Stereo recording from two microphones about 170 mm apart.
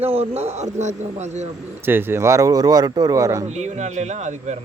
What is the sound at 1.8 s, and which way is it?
Speech, 15° right (ahead or behind).